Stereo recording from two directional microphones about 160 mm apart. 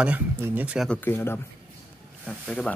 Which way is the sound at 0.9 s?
15° left (ahead or behind).